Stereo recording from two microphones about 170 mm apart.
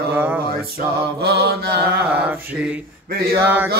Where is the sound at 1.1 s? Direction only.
70° right (ahead or behind).